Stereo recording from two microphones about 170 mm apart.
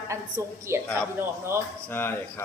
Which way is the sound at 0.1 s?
15° right (ahead or behind).